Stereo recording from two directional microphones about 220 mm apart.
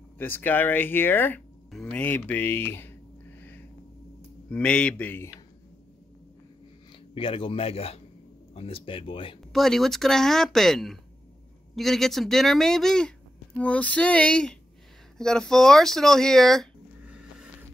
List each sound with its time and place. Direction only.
0.2 s speech: 10° left (ahead or behind)
7.2 s a man's voice: 25° left (ahead or behind)
9.5 s speech: centre (ahead or behind)